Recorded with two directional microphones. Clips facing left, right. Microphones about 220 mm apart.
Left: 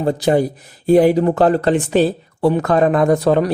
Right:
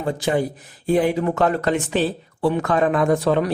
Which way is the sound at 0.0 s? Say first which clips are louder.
Left 6 dB; 35° left (ahead or behind).